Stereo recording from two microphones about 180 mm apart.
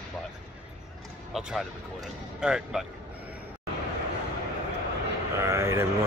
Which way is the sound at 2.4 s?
Centre (ahead or behind).